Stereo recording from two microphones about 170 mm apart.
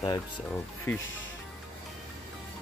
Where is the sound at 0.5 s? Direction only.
10° left (ahead or behind).